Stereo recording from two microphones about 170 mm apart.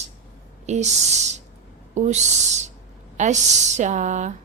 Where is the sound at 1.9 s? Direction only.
45° right (ahead or behind).